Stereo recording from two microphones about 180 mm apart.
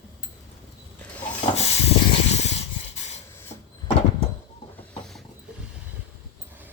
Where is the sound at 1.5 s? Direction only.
35° left (ahead or behind).